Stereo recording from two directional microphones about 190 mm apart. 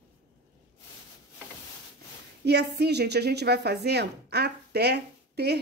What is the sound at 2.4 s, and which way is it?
Speech, 60° right (ahead or behind).